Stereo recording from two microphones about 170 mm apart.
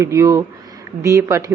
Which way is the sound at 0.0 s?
20° right (ahead or behind).